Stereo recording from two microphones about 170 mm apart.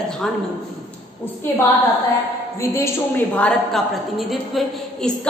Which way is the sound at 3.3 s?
5° left (ahead or behind).